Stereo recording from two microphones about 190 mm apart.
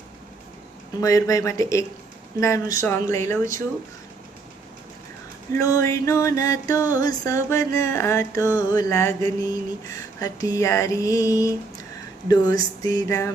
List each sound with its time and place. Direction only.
1.0 s music: 15° left (ahead or behind)
5.5 s music: 15° left (ahead or behind)
12.3 s a sound: 20° left (ahead or behind)